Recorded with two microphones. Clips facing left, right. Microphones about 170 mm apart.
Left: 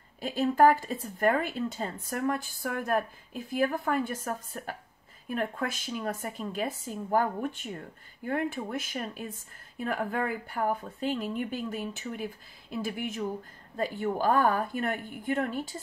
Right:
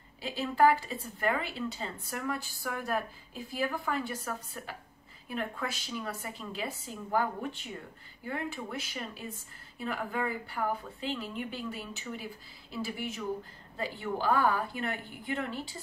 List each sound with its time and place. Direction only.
0.2 s a woman's voice: 45° left (ahead or behind)